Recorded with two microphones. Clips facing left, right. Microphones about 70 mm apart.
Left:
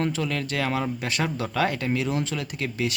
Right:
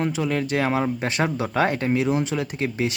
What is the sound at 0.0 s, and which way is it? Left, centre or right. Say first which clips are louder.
Speech: right 3 dB; centre.